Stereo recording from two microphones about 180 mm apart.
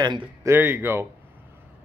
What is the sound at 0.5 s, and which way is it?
Speech, 10° right (ahead or behind).